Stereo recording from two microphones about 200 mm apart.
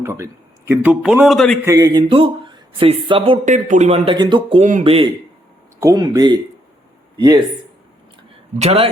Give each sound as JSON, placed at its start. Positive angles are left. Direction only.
{"t": 0.0, "sound": "speech", "side_deg": -15}
{"t": 1.6, "sound": "speech", "side_deg": -15}
{"t": 5.8, "sound": "speech", "side_deg": -20}
{"t": 8.5, "sound": "a man's voice", "side_deg": -30}